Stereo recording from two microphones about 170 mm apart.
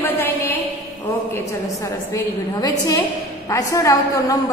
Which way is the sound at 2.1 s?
20° left (ahead or behind).